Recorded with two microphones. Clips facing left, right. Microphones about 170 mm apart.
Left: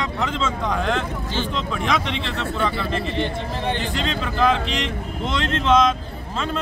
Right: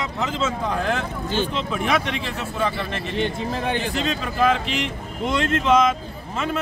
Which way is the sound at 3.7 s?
10° right (ahead or behind).